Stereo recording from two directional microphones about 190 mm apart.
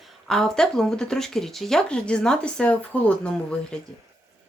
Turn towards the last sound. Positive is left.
turn(degrees=5)  # may be behind; listen again after turning